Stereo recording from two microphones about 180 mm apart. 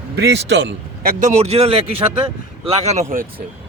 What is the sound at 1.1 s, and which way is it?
Speech, 40° right (ahead or behind).